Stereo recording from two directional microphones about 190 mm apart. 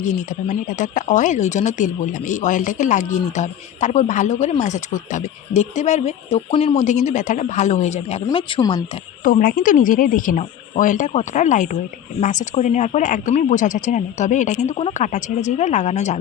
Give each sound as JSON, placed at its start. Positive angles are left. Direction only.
{"t": 0.0, "sound": "speech", "side_deg": 40}
{"t": 9.2, "sound": "speech", "side_deg": 45}